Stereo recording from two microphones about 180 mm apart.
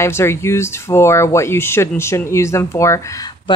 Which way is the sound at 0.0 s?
15° left (ahead or behind).